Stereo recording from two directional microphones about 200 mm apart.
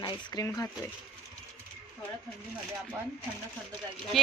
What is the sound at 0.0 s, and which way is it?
Speech, 20° left (ahead or behind).